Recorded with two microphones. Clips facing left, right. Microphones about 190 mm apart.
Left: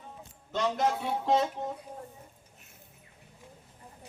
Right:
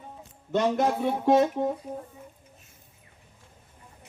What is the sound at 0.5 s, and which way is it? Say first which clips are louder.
Speech: right 5 dB; 50° right (ahead or behind).